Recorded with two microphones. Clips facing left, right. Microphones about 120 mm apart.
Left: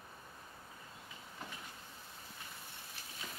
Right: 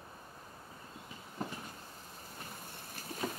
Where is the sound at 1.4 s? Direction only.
40° right (ahead or behind).